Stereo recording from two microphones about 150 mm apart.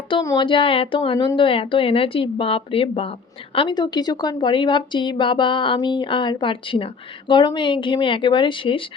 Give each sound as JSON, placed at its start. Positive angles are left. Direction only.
{"t": 0.1, "sound": "a woman's voice", "side_deg": 30}